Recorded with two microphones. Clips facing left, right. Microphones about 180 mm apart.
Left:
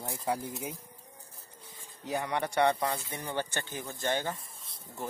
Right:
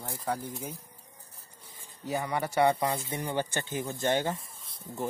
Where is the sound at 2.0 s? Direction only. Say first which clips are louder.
Right 1 dB; centre (ahead or behind).